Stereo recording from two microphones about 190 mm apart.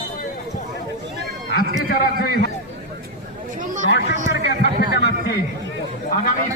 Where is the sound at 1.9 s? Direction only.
50° left (ahead or behind).